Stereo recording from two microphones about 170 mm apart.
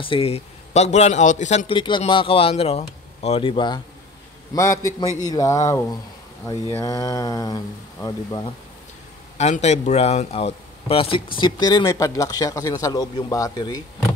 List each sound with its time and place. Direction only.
0.0 s speech: 35° left (ahead or behind)
1.7 s a man's voice: 30° left (ahead or behind)
9.4 s speech: 40° left (ahead or behind); by 14.0 s 25° left (ahead or behind)